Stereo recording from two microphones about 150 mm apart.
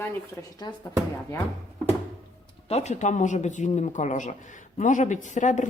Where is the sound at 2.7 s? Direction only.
45° left (ahead or behind).